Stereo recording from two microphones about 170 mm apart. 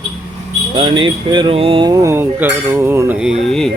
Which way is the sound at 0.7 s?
30° right (ahead or behind).